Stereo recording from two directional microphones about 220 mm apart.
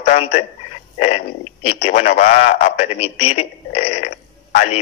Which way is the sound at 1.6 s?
30° left (ahead or behind).